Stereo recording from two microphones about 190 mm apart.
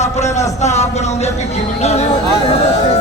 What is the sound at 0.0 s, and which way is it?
A man's voice, 35° left (ahead or behind).